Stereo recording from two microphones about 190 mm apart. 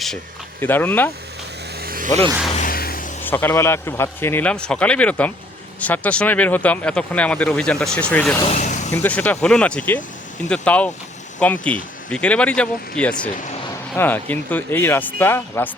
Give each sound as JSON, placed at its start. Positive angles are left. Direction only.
{"t": 0.6, "sound": "speech", "side_deg": 10}
{"t": 1.8, "sound": "a sound", "side_deg": -50}
{"t": 2.5, "sound": "music", "side_deg": 45}
{"t": 3.2, "sound": "speech", "side_deg": 10}
{"t": 8.4, "sound": "vehicle", "side_deg": 40}
{"t": 8.9, "sound": "speech", "side_deg": 10}